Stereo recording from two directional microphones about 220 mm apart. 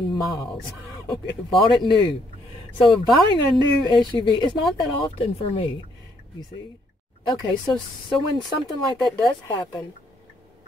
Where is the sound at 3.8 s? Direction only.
20° left (ahead or behind).